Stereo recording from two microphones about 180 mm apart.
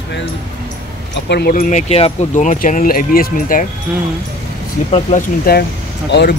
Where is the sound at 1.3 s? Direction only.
60° left (ahead or behind).